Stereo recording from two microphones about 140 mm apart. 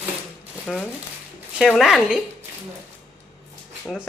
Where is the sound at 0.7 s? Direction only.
Centre (ahead or behind).